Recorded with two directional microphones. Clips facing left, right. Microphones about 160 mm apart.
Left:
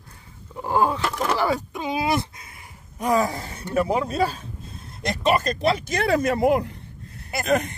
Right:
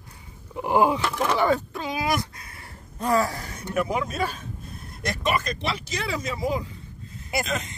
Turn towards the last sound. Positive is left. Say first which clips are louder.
# left 6 dB
turn(degrees=60)  # may be behind; listen again after turning